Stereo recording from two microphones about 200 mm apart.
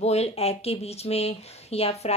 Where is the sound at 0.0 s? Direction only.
30° left (ahead or behind).